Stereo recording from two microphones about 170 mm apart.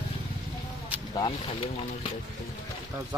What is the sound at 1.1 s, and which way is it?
Speech, 30° left (ahead or behind).